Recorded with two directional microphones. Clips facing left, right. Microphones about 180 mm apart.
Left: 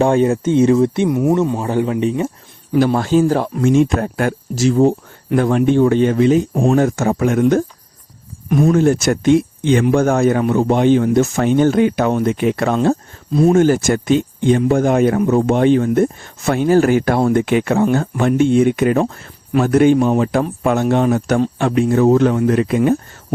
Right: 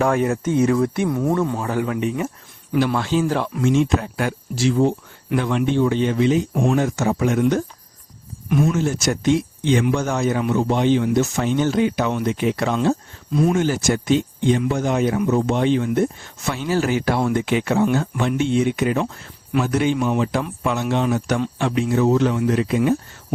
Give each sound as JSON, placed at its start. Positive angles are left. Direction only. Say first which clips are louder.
{"t": 0.0, "sound": "speech", "louder": "left 5 dB", "side_deg": 30}
{"t": 2.7, "sound": "speech", "louder": "left 6 dB", "side_deg": 40}
{"t": 6.5, "sound": "speech", "louder": "left 4 dB", "side_deg": 30}
{"t": 6.7, "sound": "speech", "louder": "left 5 dB", "side_deg": 50}
{"t": 8.6, "sound": "speech", "louder": "left 9 dB", "side_deg": 55}